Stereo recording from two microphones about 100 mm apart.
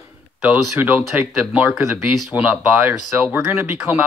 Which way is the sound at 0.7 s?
20° right (ahead or behind).